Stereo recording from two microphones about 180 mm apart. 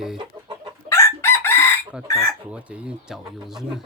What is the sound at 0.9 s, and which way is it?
Chicken, 15° left (ahead or behind).